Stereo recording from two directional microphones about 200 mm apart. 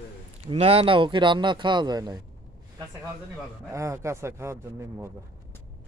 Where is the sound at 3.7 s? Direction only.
15° right (ahead or behind).